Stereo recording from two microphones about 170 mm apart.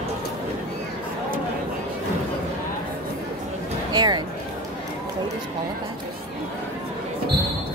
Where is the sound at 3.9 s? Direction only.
25° right (ahead or behind).